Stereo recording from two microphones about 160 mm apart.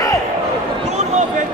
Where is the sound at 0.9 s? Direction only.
45° right (ahead or behind).